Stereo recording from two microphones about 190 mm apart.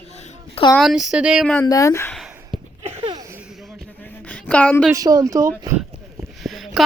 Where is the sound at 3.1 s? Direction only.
20° right (ahead or behind).